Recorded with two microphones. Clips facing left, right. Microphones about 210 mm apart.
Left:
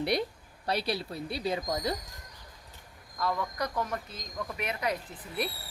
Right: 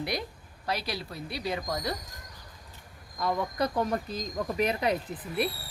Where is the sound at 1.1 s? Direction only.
25° left (ahead or behind).